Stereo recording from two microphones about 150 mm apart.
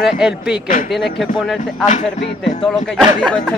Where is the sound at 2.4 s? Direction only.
Centre (ahead or behind).